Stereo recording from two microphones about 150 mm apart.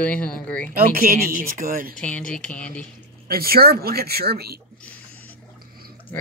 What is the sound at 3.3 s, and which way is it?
Speech, 90° right.